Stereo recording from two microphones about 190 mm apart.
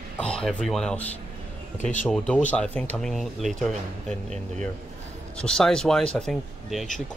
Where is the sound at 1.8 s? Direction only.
40° left (ahead or behind).